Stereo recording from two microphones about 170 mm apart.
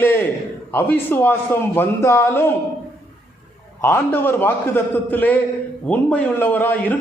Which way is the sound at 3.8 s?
15° left (ahead or behind).